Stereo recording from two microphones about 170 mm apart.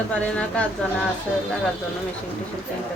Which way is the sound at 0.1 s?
5° left (ahead or behind).